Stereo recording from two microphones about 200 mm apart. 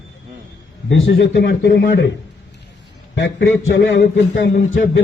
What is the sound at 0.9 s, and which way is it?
A man's voice, 60° left (ahead or behind).